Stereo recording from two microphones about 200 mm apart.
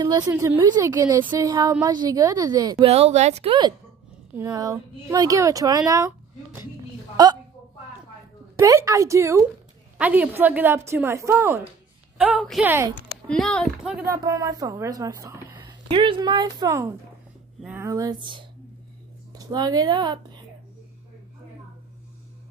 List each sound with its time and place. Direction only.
0.0 s a woman's voice: 20° right (ahead or behind)
8.5 s speech: 15° right (ahead or behind)
14.0 s a woman's voice: 15° right (ahead or behind)